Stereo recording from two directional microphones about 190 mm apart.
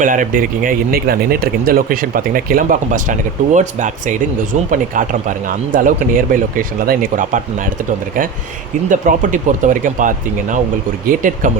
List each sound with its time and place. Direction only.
0.0 s speech: 45° right (ahead or behind)
8.9 s speech: 40° right (ahead or behind)